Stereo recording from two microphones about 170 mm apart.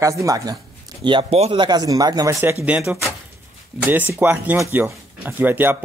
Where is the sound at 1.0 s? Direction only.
35° right (ahead or behind).